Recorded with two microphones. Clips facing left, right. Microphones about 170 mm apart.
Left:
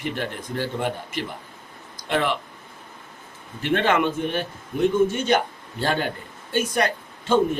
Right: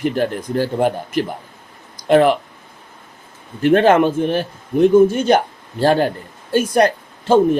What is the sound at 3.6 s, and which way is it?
Speech, 40° right (ahead or behind).